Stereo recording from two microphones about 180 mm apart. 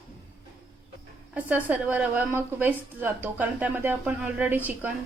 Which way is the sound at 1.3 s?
10° right (ahead or behind).